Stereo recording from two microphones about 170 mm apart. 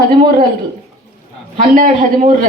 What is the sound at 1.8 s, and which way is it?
Speech, 50° right (ahead or behind).